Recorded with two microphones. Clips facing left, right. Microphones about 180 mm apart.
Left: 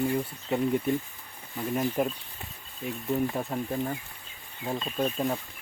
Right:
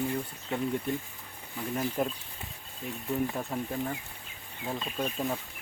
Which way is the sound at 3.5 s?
Centre (ahead or behind).